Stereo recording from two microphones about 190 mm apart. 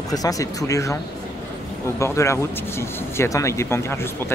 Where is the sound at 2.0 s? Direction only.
15° left (ahead or behind).